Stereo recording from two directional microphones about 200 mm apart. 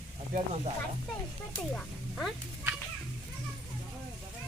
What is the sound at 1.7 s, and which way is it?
Music, centre (ahead or behind).